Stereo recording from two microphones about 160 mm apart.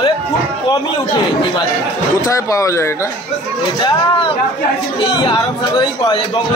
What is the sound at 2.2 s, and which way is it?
A man's voice, 20° left (ahead or behind).